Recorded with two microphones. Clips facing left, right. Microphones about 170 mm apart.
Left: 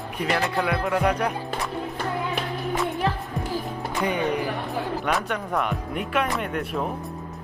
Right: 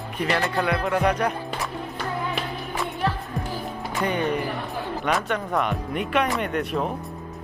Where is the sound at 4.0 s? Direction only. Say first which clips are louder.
Even; 5° left (ahead or behind).